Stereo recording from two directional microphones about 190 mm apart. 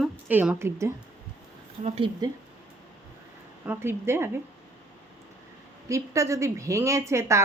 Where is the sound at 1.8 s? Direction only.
30° right (ahead or behind).